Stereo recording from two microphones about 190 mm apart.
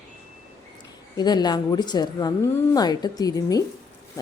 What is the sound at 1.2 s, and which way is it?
A woman's voice, 20° left (ahead or behind).